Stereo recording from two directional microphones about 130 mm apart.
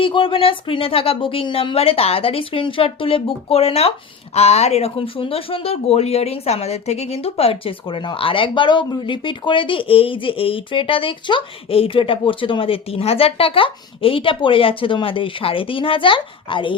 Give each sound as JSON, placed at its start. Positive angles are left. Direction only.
{"t": 0.0, "sound": "speech", "side_deg": 40}